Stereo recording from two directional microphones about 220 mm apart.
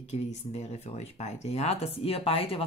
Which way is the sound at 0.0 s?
30° left (ahead or behind).